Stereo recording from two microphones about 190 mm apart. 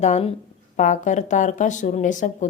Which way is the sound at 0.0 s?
35° left (ahead or behind).